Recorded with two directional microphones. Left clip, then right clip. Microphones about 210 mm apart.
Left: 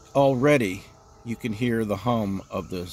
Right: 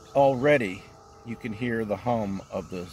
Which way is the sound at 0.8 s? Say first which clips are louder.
Left 3 dB; 20° right (ahead or behind).